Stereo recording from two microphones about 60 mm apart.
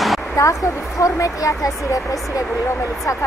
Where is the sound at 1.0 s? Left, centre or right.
Left.